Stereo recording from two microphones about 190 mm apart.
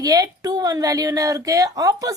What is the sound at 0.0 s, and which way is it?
A woman's voice, 20° right (ahead or behind).